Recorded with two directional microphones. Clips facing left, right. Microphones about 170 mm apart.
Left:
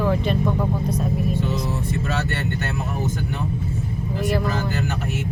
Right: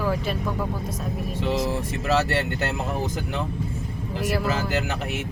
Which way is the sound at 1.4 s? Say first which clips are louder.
Right 1 dB; 90° right.